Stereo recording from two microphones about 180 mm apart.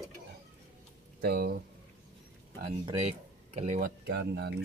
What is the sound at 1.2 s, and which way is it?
Speech, 60° right (ahead or behind).